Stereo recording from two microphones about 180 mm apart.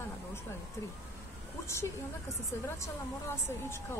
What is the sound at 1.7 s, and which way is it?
A woman's voice, 15° left (ahead or behind).